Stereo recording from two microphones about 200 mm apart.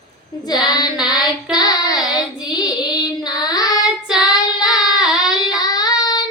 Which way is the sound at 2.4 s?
20° left (ahead or behind).